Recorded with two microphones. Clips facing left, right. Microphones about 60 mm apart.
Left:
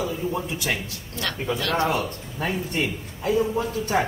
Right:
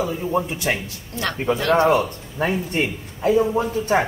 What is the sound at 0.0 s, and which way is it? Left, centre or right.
Speech, right.